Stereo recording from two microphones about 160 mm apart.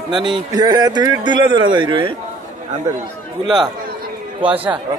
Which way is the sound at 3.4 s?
25° right (ahead or behind).